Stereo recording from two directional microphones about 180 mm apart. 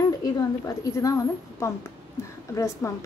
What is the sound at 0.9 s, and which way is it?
A woman's voice, 15° left (ahead or behind).